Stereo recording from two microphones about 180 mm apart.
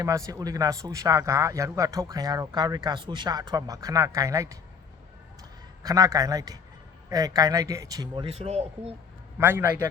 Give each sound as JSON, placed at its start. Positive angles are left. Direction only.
{"t": 0.0, "sound": "speech", "side_deg": -20}
{"t": 5.4, "sound": "a sound", "side_deg": -20}
{"t": 7.1, "sound": "speech", "side_deg": -20}
{"t": 9.4, "sound": "a man's voice", "side_deg": -10}